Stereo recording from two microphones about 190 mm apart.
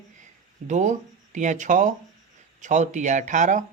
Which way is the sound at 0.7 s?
40° right (ahead or behind).